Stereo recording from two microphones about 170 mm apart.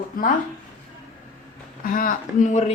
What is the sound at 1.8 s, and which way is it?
Speech, 55° left (ahead or behind).